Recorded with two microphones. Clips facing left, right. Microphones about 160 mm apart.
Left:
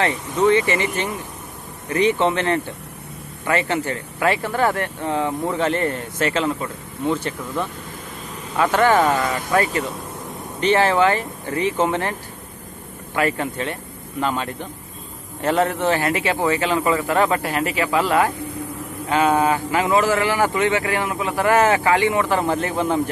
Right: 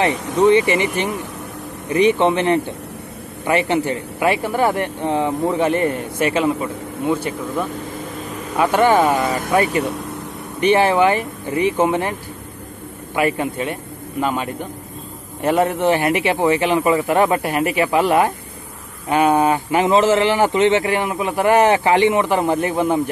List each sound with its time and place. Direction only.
0.0 s a man's voice: 20° right (ahead or behind)